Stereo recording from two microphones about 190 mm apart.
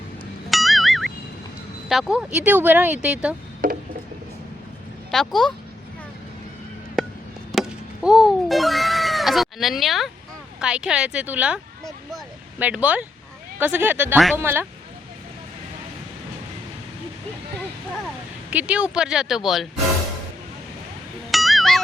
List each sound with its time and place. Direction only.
0.5 s music: centre (ahead or behind)
1.9 s speech: 5° right (ahead or behind)
3.6 s a sound: 45° right (ahead or behind)
5.1 s speech: centre (ahead or behind)
7.0 s chop: centre (ahead or behind)
7.5 s speech: centre (ahead or behind)
12.1 s a sound: 5° right (ahead or behind)
13.6 s speech: 10° right (ahead or behind)
18.5 s speech: 5° right (ahead or behind)
21.2 s music: centre (ahead or behind)